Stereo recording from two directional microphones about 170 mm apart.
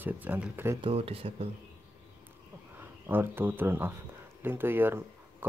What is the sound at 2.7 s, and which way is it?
Speech, 10° right (ahead or behind).